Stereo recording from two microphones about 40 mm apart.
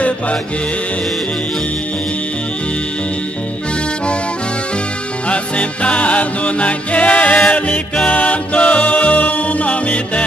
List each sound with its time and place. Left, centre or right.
5.3 s music: left